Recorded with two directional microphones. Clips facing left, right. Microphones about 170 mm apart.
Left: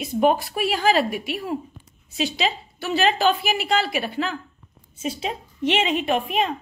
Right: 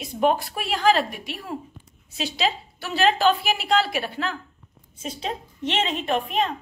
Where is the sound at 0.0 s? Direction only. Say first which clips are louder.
Left 2 dB; 5° left (ahead or behind).